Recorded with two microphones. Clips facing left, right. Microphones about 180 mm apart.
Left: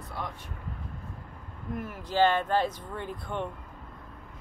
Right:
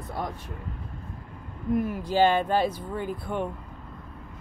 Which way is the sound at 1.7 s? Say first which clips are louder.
Right 6 dB; 15° right (ahead or behind).